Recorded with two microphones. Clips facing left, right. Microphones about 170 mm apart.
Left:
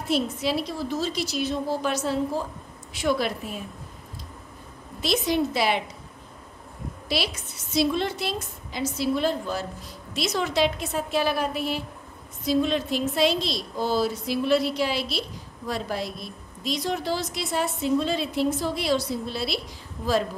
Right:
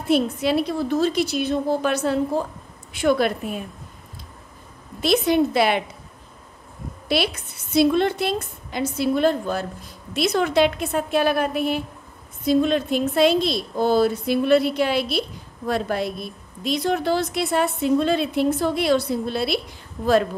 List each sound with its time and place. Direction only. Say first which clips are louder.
0.1 s a woman's voice: right 6 dB; 60° right (ahead or behind)
5.0 s a woman's voice: right 6 dB; 55° right (ahead or behind)
7.1 s a woman's voice: right 6 dB; 60° right (ahead or behind)